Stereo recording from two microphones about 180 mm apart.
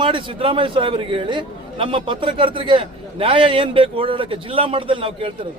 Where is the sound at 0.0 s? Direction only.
25° right (ahead or behind).